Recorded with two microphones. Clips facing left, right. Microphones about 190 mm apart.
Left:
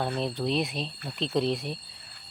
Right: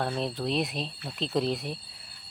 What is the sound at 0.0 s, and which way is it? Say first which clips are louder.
Speech: left 1 dB; centre (ahead or behind).